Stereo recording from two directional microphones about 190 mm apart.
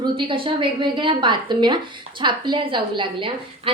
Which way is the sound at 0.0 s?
25° right (ahead or behind).